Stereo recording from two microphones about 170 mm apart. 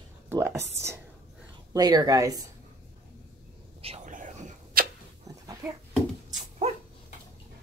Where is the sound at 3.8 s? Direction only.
35° right (ahead or behind).